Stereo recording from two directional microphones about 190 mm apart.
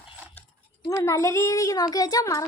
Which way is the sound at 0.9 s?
15° left (ahead or behind).